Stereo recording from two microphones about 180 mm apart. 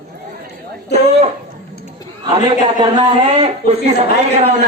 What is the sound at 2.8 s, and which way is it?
A man's voice, 35° right (ahead or behind).